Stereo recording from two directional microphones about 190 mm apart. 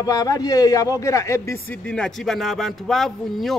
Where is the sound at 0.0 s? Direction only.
20° left (ahead or behind).